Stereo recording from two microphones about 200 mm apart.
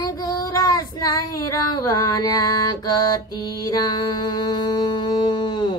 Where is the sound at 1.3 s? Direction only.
20° left (ahead or behind).